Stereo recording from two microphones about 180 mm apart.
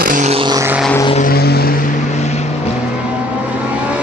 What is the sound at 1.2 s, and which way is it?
Vehicle, 60° left (ahead or behind).